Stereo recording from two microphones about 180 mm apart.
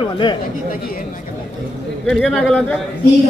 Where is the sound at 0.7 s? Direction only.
55° left (ahead or behind).